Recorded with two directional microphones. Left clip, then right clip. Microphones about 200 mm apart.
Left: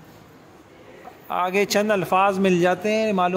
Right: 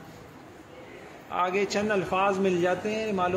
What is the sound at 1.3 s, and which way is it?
A man's voice, 55° left (ahead or behind).